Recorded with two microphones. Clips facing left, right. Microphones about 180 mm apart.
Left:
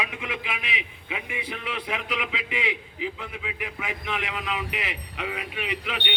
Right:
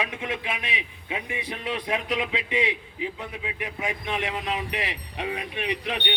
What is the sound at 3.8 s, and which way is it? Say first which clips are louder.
A man's voice: right 4 dB; 25° right (ahead or behind).